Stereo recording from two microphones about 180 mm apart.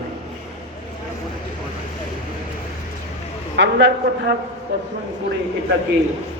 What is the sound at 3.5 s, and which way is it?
Speech, 80° right.